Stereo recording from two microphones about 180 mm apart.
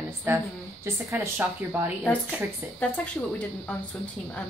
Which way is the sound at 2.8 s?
10° left (ahead or behind).